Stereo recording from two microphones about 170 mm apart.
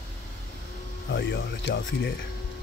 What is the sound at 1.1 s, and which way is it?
Speech, 85° left.